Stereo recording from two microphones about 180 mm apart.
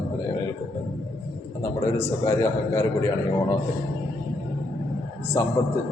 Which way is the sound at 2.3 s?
15° left (ahead or behind).